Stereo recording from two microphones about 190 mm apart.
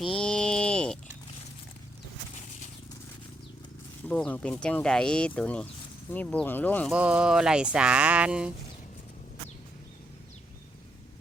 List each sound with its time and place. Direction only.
0.0 s a sound: 5° left (ahead or behind)
4.1 s speech: 5° left (ahead or behind)
6.9 s speech: 5° right (ahead or behind)